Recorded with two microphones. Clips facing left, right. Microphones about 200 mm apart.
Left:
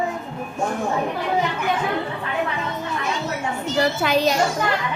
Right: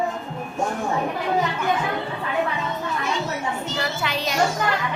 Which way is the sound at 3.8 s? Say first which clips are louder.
Left 10 dB; 45° left (ahead or behind).